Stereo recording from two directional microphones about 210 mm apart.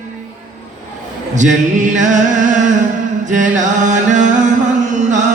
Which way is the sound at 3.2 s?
35° right (ahead or behind).